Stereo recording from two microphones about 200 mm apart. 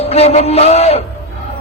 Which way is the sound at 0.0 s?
30° left (ahead or behind).